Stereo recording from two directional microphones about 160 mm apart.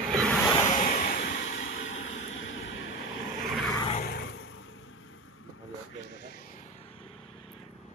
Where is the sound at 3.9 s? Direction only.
65° left (ahead or behind).